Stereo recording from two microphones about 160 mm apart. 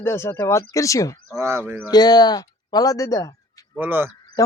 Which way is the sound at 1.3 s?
20° right (ahead or behind).